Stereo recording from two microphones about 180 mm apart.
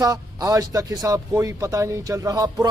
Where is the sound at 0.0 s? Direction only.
20° right (ahead or behind).